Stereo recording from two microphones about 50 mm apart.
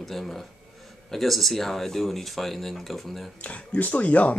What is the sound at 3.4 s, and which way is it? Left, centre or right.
Speech, left.